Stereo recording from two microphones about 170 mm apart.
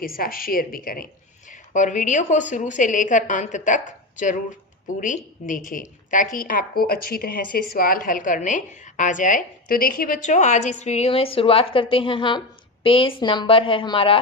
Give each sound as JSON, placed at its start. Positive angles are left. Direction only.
{"t": 0.0, "sound": "a woman's voice", "side_deg": 55}
{"t": 1.5, "sound": "speech", "side_deg": 45}
{"t": 4.9, "sound": "a woman's voice", "side_deg": 50}